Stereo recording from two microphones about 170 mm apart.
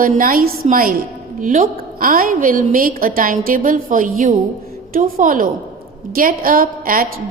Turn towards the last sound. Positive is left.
turn(degrees=-55)  # may be behind; listen again after turning